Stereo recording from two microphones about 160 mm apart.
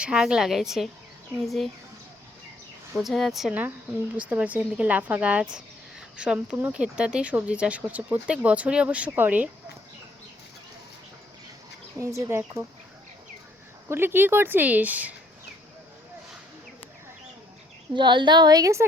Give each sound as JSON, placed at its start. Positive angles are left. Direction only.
{"t": 0.0, "sound": "a woman's voice", "side_deg": -5}
{"t": 2.9, "sound": "a woman's voice", "side_deg": 0}
{"t": 11.9, "sound": "speech", "side_deg": -20}
{"t": 13.8, "sound": "speech", "side_deg": -15}
{"t": 17.9, "sound": "a woman's voice", "side_deg": -30}